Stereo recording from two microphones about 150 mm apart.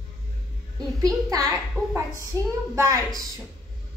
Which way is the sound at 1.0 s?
25° right (ahead or behind).